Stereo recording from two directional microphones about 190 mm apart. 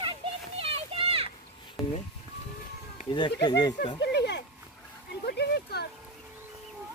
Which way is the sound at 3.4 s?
20° left (ahead or behind).